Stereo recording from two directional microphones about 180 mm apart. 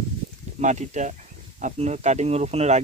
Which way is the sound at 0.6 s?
40° right (ahead or behind).